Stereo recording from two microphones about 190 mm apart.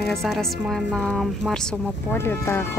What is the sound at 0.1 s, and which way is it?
Speech, centre (ahead or behind).